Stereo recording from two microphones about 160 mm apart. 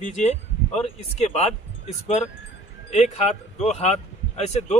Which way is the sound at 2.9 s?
45° left (ahead or behind).